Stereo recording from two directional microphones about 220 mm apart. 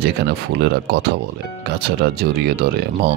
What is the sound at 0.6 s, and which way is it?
Speech, 50° right (ahead or behind).